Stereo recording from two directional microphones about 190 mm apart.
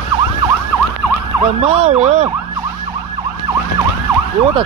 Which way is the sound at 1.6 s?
35° right (ahead or behind).